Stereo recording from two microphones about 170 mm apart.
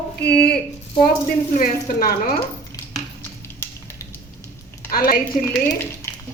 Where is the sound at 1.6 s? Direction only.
55° left (ahead or behind).